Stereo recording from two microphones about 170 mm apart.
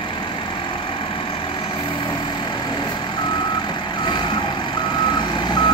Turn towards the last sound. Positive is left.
turn(degrees=25)  # may be behind; listen again after turning